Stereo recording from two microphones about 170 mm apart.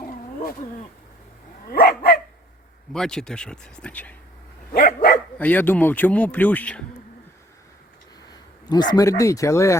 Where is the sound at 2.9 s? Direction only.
5° left (ahead or behind).